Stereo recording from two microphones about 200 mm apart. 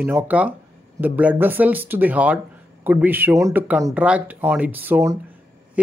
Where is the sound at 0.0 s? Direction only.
10° right (ahead or behind).